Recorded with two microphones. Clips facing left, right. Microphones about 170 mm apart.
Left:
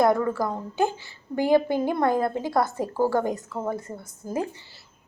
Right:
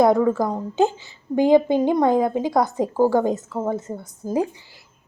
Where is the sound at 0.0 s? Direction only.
20° right (ahead or behind).